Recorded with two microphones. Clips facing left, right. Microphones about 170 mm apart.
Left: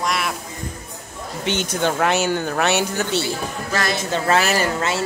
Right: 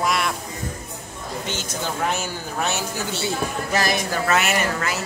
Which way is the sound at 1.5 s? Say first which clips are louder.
Left 9 dB; 65° left (ahead or behind).